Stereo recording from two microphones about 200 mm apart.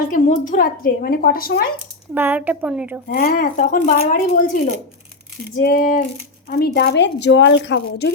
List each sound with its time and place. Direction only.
0.1 s a woman's voice: 40° left (ahead or behind)
2.1 s a woman's voice: 10° right (ahead or behind)
3.1 s a woman's voice: 45° left (ahead or behind)
5.5 s a sound: 45° left (ahead or behind)
6.5 s speech: 50° left (ahead or behind)